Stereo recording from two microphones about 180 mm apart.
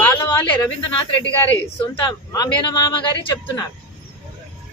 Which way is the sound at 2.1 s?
25° left (ahead or behind).